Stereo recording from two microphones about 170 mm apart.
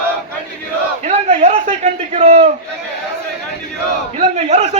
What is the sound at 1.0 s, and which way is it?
A man's voice, 40° right (ahead or behind).